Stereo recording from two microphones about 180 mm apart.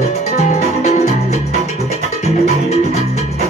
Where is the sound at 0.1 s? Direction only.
40° left (ahead or behind).